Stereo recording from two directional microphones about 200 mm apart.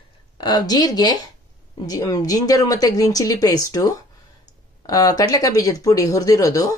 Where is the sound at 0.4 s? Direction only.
20° left (ahead or behind).